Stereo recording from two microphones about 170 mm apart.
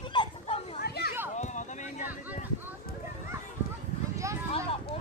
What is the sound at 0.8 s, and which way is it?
Children playing, 70° left (ahead or behind).